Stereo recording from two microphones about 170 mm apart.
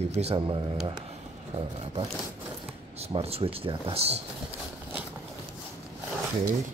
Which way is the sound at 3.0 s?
35° right (ahead or behind).